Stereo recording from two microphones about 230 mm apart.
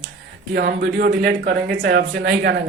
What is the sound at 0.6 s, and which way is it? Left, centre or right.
Speech, right.